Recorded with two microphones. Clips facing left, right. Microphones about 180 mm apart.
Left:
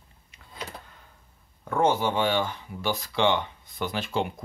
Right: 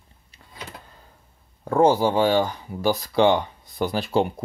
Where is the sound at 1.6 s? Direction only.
35° right (ahead or behind).